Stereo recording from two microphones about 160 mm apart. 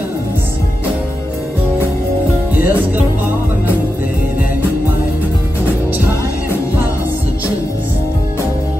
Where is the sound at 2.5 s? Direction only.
10° right (ahead or behind).